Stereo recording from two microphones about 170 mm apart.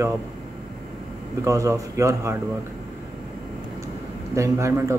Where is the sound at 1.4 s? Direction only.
20° right (ahead or behind).